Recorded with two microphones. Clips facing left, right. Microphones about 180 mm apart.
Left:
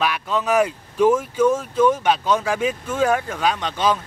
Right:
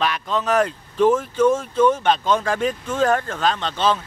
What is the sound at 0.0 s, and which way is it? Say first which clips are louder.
Speech: even; 5° left (ahead or behind).